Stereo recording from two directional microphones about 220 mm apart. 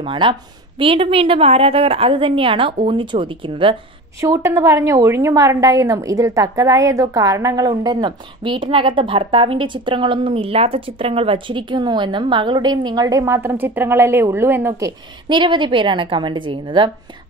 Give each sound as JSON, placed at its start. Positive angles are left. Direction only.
{"t": 0.0, "sound": "a woman's voice", "side_deg": -20}